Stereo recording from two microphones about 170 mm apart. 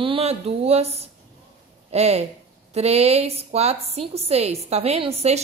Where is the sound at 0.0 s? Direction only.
35° right (ahead or behind).